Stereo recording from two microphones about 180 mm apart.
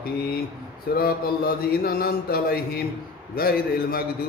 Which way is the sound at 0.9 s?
55° left (ahead or behind).